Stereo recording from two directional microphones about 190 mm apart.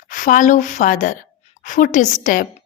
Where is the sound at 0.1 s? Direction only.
45° left (ahead or behind).